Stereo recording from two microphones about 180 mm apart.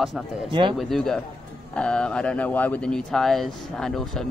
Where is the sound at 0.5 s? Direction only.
25° right (ahead or behind).